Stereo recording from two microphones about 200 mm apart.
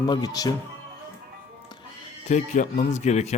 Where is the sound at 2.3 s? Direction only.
35° left (ahead or behind).